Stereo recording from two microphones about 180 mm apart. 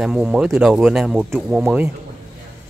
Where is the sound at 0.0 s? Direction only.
5° right (ahead or behind).